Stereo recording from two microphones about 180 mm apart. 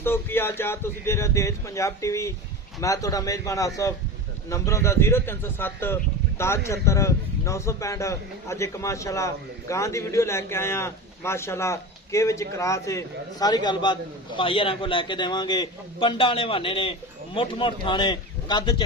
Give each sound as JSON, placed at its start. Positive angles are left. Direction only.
{"t": 0.0, "sound": "a man's voice", "side_deg": 15}